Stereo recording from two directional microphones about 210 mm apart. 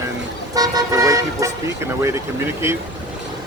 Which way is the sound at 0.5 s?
15° right (ahead or behind).